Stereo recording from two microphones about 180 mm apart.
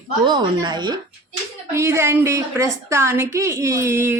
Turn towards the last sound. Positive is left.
turn(degrees=-15)  # may be behind; listen again after turning